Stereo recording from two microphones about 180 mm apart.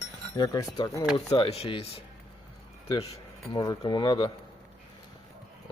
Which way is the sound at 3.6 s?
20° left (ahead or behind).